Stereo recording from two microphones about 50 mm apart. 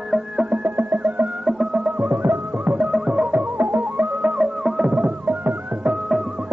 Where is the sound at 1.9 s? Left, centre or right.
Right.